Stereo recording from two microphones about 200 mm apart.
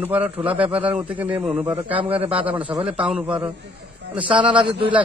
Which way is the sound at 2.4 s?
5° right (ahead or behind).